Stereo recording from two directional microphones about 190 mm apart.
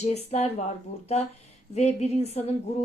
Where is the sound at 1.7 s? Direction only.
35° left (ahead or behind).